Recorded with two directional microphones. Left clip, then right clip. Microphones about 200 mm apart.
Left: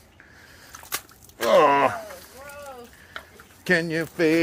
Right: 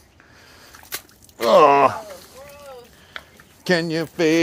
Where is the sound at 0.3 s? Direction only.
20° right (ahead or behind).